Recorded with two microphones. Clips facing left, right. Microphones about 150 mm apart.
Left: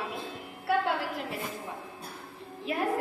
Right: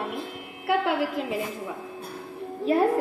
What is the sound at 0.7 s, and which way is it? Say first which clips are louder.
Speech: right 4 dB; 90° right.